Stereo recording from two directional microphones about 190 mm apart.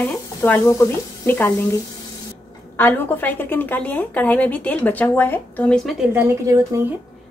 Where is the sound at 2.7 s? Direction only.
10° left (ahead or behind).